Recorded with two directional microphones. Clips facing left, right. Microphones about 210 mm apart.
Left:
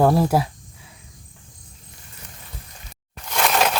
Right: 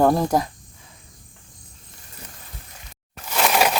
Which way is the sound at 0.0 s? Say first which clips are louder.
Left 1 dB; 5° left (ahead or behind).